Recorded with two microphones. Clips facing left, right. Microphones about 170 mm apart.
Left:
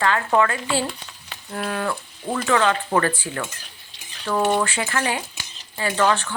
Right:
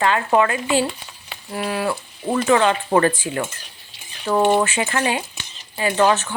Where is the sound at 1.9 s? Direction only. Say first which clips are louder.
Right 4 dB; 25° right (ahead or behind).